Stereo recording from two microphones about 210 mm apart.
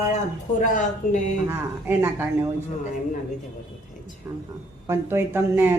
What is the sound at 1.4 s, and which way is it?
Speech, 10° right (ahead or behind).